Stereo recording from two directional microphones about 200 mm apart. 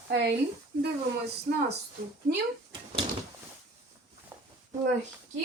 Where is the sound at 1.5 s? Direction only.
45° right (ahead or behind).